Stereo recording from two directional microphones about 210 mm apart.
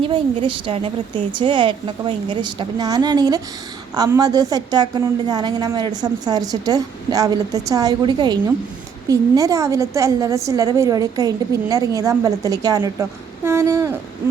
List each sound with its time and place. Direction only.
0.0 s a woman's voice: 25° right (ahead or behind)